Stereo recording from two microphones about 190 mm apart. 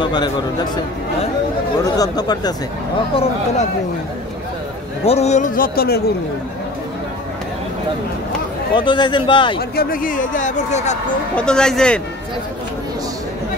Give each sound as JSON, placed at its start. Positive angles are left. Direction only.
{"t": 0.0, "sound": "a man's voice", "side_deg": 20}
{"t": 2.0, "sound": "a man's voice", "side_deg": 20}
{"t": 5.0, "sound": "speech", "side_deg": 35}
{"t": 8.7, "sound": "a man's voice", "side_deg": 25}
{"t": 9.6, "sound": "speech", "side_deg": 50}
{"t": 11.3, "sound": "speech", "side_deg": 5}